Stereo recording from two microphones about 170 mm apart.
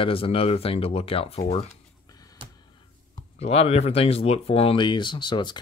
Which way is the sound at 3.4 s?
40° left (ahead or behind).